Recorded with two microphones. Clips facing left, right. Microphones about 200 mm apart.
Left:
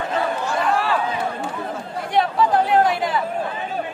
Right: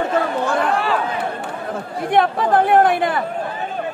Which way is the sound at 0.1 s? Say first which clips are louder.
Right 4 dB; 55° right (ahead or behind).